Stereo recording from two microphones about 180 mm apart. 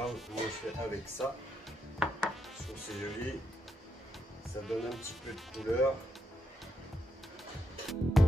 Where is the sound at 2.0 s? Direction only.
5° right (ahead or behind).